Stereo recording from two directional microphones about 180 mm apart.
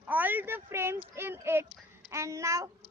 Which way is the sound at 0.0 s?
10° right (ahead or behind).